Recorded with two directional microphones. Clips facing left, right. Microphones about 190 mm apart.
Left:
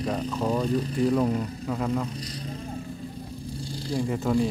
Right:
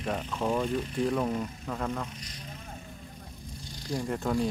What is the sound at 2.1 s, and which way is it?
Speech, 35° left (ahead or behind).